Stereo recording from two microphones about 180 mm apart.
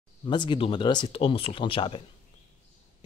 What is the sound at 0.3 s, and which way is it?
Speech, 25° left (ahead or behind).